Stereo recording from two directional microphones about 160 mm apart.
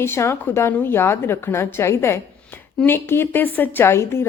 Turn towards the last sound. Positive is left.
turn(degrees=15)  # may be behind; listen again after turning